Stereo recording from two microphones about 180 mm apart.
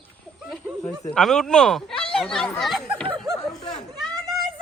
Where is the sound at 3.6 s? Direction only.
40° left (ahead or behind).